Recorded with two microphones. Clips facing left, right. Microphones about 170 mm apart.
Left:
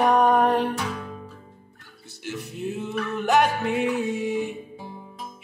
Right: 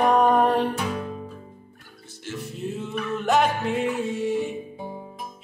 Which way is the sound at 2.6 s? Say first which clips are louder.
Left 2 dB; 5° left (ahead or behind).